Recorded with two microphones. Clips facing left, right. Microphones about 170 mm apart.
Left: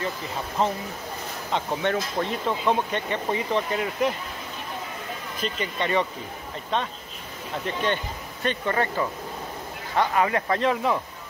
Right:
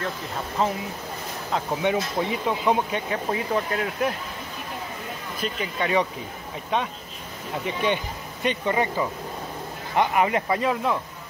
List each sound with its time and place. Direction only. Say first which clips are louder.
0.6 s speech: even; centre (ahead or behind)
5.4 s speech: right 1 dB; 5° right (ahead or behind)
7.6 s speech: right 2 dB; 10° right (ahead or behind)
10.6 s speech: left 1 dB; centre (ahead or behind)